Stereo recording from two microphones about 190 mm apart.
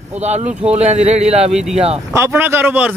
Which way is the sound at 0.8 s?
35° right (ahead or behind).